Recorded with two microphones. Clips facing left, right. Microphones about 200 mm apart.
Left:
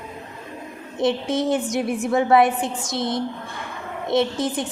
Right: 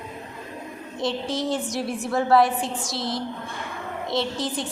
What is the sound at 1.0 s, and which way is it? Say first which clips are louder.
Speech: left 5 dB; 25° left (ahead or behind).